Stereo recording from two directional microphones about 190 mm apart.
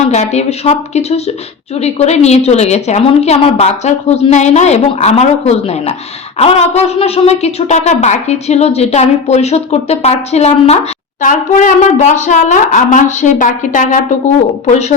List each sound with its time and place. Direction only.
0.1 s a woman's voice: 35° left (ahead or behind)